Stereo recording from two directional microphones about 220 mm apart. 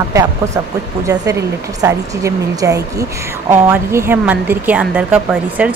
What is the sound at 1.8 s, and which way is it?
Speech, 15° right (ahead or behind).